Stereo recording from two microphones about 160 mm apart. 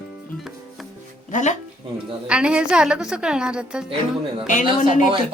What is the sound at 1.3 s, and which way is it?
Speech, 50° left (ahead or behind).